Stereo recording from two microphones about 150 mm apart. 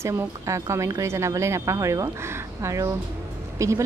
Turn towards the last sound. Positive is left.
turn(degrees=-20)  # may be behind; listen again after turning